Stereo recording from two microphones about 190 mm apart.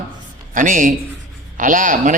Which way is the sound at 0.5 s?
45° right (ahead or behind).